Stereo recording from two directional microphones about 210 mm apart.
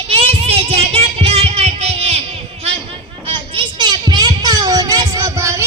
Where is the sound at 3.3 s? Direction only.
20° right (ahead or behind).